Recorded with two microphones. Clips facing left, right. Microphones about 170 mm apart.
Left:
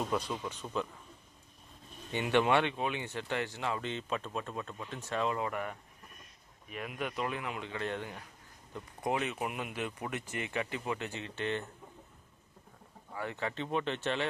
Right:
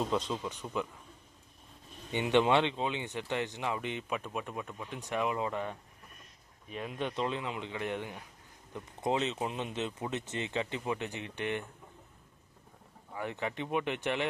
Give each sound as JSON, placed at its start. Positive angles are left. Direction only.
{"t": 0.1, "sound": "speech", "side_deg": -20}
{"t": 2.1, "sound": "speech", "side_deg": -20}
{"t": 13.1, "sound": "speech", "side_deg": -20}